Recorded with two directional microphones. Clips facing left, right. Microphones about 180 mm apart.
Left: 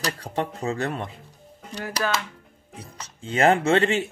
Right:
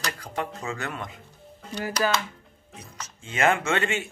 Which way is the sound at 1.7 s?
5° right (ahead or behind).